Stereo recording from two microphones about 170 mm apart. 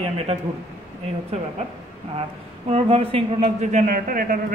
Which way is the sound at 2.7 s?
35° right (ahead or behind).